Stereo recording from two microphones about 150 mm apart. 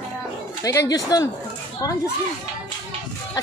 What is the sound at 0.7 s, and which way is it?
Speech, 20° left (ahead or behind).